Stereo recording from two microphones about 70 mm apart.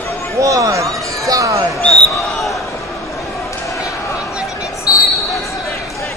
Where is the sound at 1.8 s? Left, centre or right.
Centre.